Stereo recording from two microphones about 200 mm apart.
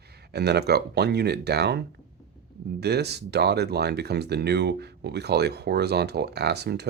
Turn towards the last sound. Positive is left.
turn(degrees=-55)  # may be behind; listen again after turning